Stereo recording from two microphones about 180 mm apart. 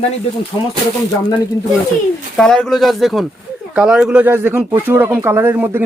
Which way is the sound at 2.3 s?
5° left (ahead or behind).